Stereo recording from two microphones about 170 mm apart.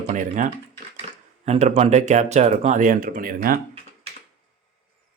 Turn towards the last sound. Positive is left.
turn(degrees=-60)  # may be behind; listen again after turning